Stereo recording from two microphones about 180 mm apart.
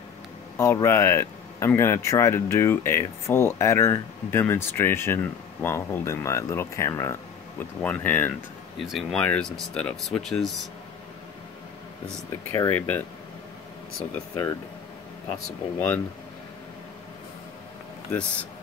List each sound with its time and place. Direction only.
0.6 s speech: 15° left (ahead or behind)
12.5 s speech: 15° left (ahead or behind)
14.3 s speech: 20° left (ahead or behind)
15.3 s speech: 10° left (ahead or behind)